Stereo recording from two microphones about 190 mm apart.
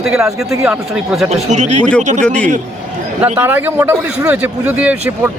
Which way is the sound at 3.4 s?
10° right (ahead or behind).